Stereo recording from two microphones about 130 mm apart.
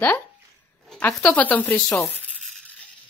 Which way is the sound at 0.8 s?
10° left (ahead or behind).